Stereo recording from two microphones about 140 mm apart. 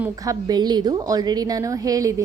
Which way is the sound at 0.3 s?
30° right (ahead or behind).